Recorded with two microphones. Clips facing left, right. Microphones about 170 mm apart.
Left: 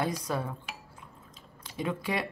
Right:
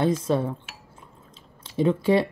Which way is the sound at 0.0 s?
25° right (ahead or behind).